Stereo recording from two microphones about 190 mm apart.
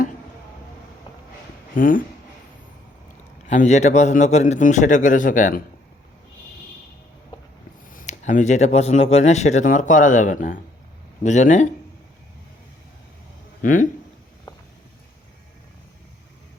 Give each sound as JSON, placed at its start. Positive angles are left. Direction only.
{"t": 1.7, "sound": "speech", "side_deg": 45}
{"t": 3.4, "sound": "speech", "side_deg": 40}
{"t": 7.9, "sound": "speech", "side_deg": 40}
{"t": 13.6, "sound": "speech", "side_deg": 45}